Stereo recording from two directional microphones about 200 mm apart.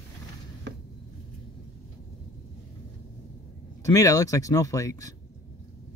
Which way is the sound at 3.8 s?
15° left (ahead or behind).